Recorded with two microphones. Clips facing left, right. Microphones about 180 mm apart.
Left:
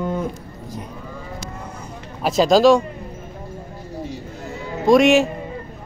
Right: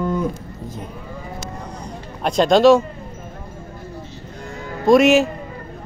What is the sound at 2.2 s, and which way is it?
Speech, 5° left (ahead or behind).